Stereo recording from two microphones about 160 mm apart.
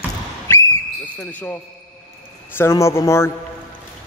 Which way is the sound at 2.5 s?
15° left (ahead or behind).